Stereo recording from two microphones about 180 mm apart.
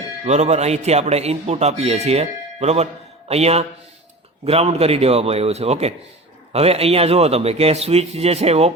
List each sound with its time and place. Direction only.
0.3 s a man's voice: 40° right (ahead or behind)